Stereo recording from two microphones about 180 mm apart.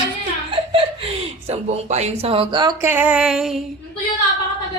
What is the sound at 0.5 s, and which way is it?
Speech, 30° right (ahead or behind).